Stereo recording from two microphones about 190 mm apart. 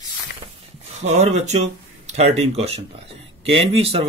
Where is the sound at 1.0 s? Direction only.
35° right (ahead or behind).